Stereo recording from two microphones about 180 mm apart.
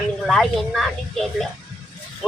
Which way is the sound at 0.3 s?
Centre (ahead or behind).